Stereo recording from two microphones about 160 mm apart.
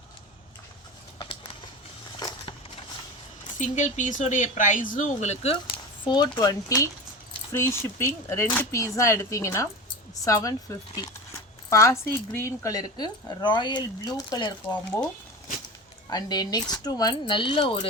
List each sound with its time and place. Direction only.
2.1 s crushing: 25° left (ahead or behind)
3.6 s speech: 50° left (ahead or behind); by 14.8 s 25° left (ahead or behind)
16.0 s speech: 25° left (ahead or behind)